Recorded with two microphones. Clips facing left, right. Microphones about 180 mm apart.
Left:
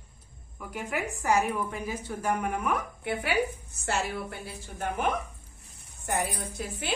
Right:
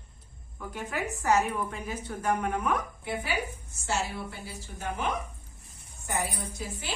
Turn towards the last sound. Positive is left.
turn(degrees=55)  # may be behind; listen again after turning